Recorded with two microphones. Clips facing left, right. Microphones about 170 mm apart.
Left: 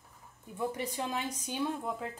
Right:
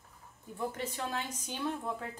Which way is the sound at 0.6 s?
15° left (ahead or behind).